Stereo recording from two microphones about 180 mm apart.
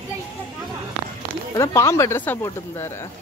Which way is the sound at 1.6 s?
15° left (ahead or behind).